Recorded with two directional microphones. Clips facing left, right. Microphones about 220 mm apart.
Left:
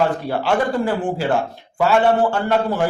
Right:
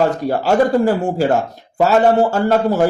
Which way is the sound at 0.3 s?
40° right (ahead or behind).